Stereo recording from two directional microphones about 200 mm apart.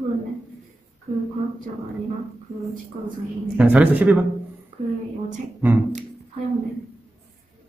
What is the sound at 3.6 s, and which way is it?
Speech, 5° right (ahead or behind).